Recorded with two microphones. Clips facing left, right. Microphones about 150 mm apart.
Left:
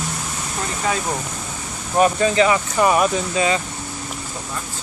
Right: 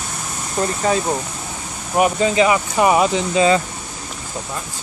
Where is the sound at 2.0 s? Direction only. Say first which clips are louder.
Even; 15° right (ahead or behind).